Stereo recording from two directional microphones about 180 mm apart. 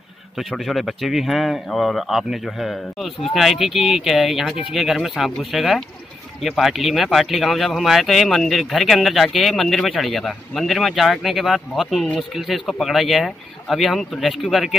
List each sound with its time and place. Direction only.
0.4 s speech: centre (ahead or behind)